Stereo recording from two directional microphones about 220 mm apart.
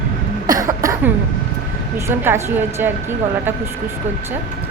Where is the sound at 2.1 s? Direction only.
10° right (ahead or behind).